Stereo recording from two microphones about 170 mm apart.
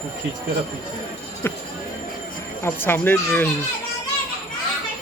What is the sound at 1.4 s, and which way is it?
Speech, 15° left (ahead or behind).